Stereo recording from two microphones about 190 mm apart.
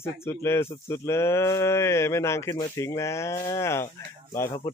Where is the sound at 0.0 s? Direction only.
15° left (ahead or behind).